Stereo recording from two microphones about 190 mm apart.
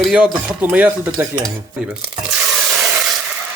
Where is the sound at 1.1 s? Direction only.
20° right (ahead or behind).